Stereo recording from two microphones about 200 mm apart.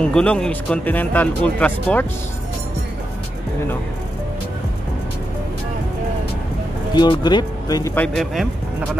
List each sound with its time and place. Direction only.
0.0 s speech: 5° left (ahead or behind)
7.0 s speech: 20° left (ahead or behind); by 8.5 s 5° left (ahead or behind)